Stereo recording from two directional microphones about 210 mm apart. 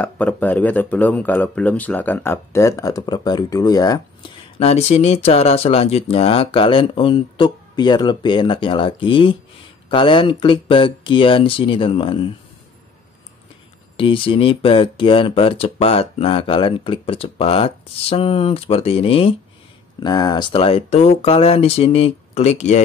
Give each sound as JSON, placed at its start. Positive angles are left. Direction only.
{"t": 0.0, "sound": "speech", "side_deg": 5}
{"t": 4.6, "sound": "speech", "side_deg": 30}
{"t": 13.9, "sound": "speech", "side_deg": 25}